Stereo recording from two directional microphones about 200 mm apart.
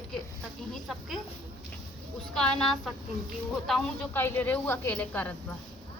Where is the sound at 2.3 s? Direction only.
5° left (ahead or behind).